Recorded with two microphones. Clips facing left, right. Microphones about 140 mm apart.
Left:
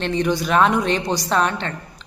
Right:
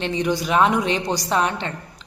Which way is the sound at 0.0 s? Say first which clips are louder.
Left 2 dB; 15° right (ahead or behind).